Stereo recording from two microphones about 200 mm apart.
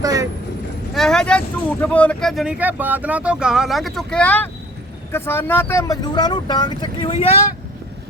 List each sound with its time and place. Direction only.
0.0 s vehicle: 15° right (ahead or behind)
0.9 s speech: 5° left (ahead or behind); by 7.3 s 30° left (ahead or behind)